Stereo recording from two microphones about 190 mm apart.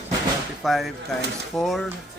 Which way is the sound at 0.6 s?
Centre (ahead or behind).